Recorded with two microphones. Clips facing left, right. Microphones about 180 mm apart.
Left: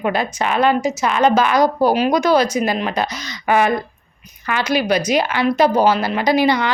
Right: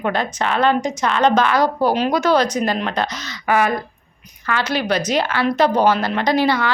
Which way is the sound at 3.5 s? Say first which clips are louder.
Left 2 dB; 20° left (ahead or behind).